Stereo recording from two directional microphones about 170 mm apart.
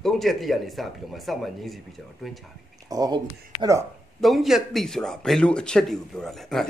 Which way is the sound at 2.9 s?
20° right (ahead or behind).